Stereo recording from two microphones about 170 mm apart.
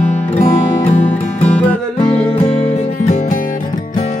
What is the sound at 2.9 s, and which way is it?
Music, 50° left (ahead or behind).